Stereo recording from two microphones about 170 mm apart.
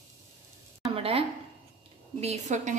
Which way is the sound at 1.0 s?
35° right (ahead or behind).